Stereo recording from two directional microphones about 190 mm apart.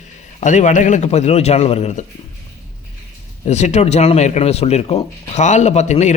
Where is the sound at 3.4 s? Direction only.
35° left (ahead or behind).